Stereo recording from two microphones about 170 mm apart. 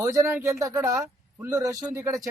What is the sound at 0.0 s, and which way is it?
Speech, 20° right (ahead or behind).